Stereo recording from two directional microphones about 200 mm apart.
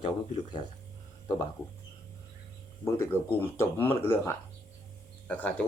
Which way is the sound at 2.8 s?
15° left (ahead or behind).